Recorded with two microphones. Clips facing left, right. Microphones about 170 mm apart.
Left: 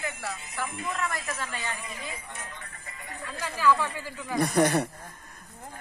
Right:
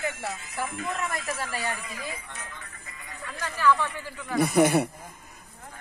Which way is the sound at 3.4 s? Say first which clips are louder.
Right 1 dB; 10° left (ahead or behind).